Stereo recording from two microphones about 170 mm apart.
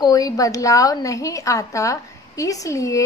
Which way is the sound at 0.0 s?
20° left (ahead or behind).